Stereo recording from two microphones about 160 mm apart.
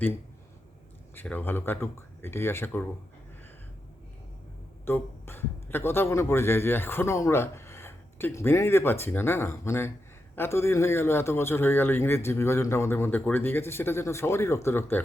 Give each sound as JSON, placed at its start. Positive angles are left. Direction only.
{"t": 1.1, "sound": "a man's voice", "side_deg": 10}
{"t": 4.9, "sound": "a man's voice", "side_deg": 15}